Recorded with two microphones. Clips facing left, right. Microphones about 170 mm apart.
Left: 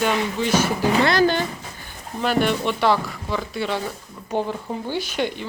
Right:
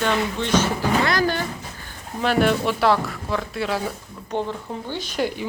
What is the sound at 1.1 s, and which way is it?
Speech, 25° left (ahead or behind).